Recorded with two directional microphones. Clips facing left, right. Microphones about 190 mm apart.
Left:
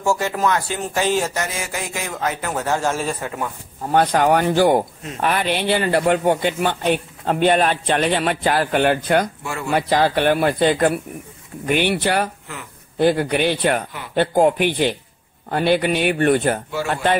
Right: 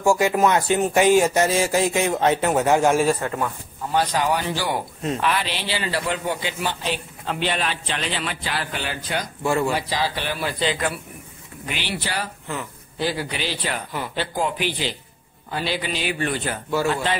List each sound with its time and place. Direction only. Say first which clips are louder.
0.0 s speech: right 2 dB; 15° right (ahead or behind)
1.4 s a man's voice: right 8 dB; 30° right (ahead or behind); by 3.2 s 15° right (ahead or behind)
3.2 s a man's voice: right 1 dB; 15° left (ahead or behind)
3.9 s speech: left 6 dB; 55° left (ahead or behind)
9.4 s speech: right 7 dB; 30° right (ahead or behind)
9.8 s a man's voice: left 8 dB; 55° left (ahead or behind)